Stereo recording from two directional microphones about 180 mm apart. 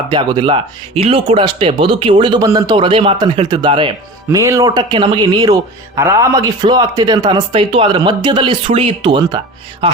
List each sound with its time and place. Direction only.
0.1 s speech: 25° right (ahead or behind)